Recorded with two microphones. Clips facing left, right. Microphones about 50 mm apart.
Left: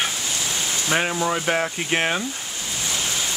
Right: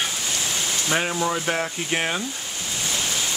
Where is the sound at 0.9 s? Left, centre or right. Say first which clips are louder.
Left 2 dB; centre.